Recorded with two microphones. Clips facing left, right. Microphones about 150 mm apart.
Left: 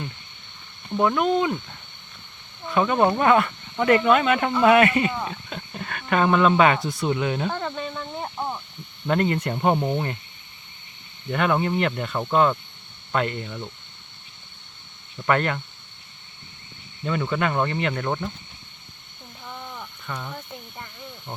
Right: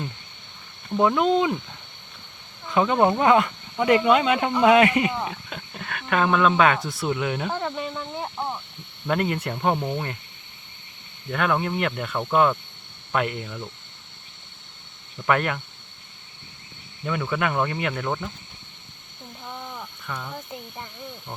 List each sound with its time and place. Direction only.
0.9 s speech: 15° right (ahead or behind)
2.7 s speech: 20° right (ahead or behind)
8.4 s a sound: centre (ahead or behind)
9.0 s speech: 5° right (ahead or behind)
9.6 s speech: 10° left (ahead or behind)
11.3 s speech: 5° left (ahead or behind)
15.3 s speech: 5° right (ahead or behind)
17.0 s speech: centre (ahead or behind)
19.5 s a sound: 5° right (ahead or behind)
20.1 s speech: 5° left (ahead or behind)
20.3 s speech: 10° right (ahead or behind)